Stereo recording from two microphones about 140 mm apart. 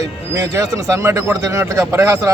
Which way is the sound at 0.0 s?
20° right (ahead or behind).